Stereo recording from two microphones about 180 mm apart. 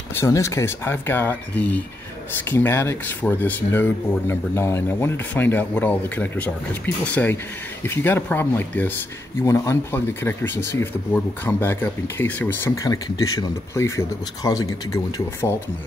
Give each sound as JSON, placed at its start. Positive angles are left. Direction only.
{"t": 0.2, "sound": "speech", "side_deg": 15}
{"t": 7.8, "sound": "speech", "side_deg": 10}